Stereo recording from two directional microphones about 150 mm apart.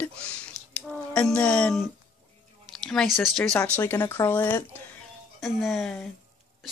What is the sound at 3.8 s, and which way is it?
Speech, 15° left (ahead or behind).